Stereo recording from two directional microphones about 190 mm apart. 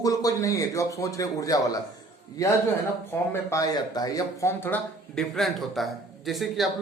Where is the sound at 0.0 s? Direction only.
20° left (ahead or behind).